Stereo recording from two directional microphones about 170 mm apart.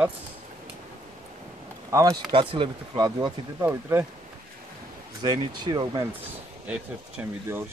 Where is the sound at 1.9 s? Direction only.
20° right (ahead or behind).